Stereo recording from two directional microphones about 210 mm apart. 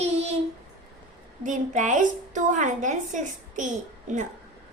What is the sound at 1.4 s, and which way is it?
A woman's voice, 35° right (ahead or behind).